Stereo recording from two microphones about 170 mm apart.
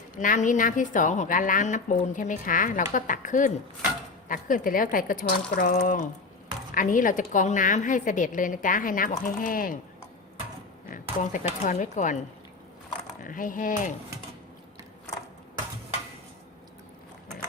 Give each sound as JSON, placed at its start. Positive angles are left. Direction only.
{"t": 0.2, "sound": "a woman's voice", "side_deg": 50}
{"t": 11.2, "sound": "a woman's voice", "side_deg": 45}
{"t": 13.2, "sound": "a woman's voice", "side_deg": 55}